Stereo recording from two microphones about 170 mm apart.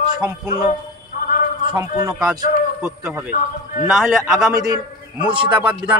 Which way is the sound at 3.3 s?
50° left (ahead or behind).